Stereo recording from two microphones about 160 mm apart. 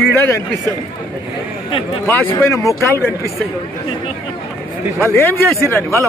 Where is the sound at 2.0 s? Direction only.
15° left (ahead or behind).